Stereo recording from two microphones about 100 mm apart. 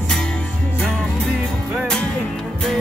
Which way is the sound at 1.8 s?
10° left (ahead or behind).